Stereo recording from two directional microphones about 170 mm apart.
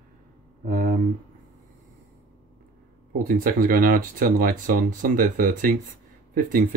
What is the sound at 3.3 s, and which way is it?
Speech, 55° right (ahead or behind).